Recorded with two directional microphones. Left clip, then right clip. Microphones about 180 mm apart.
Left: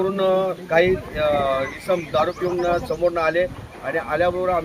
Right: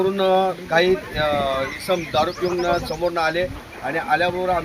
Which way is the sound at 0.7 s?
30° left (ahead or behind).